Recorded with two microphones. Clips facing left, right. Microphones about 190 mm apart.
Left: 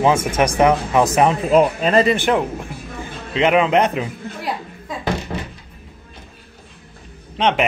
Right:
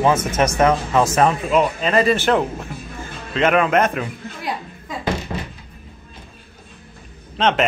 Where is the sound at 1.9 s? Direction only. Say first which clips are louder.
Even; 25° left (ahead or behind).